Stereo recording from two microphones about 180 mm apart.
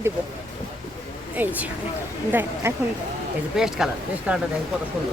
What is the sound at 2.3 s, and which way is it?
Speech, 10° right (ahead or behind).